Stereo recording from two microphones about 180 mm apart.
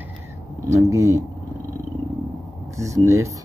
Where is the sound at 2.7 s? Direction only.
15° right (ahead or behind).